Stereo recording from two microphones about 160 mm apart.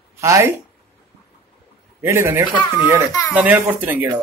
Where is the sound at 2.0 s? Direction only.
15° right (ahead or behind).